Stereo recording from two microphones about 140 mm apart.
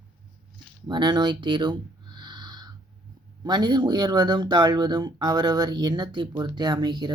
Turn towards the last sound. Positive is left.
turn(degrees=-30)  # may be behind; listen again after turning